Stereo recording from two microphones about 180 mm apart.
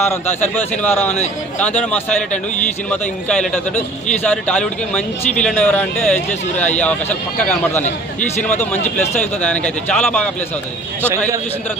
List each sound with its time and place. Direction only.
0.0 s a man's voice: 10° left (ahead or behind)
7.8 s speech: 45° left (ahead or behind)
9.2 s speech: 5° left (ahead or behind)